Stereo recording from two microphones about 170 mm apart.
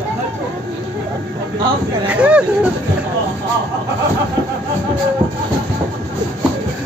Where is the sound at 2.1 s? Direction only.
5° right (ahead or behind).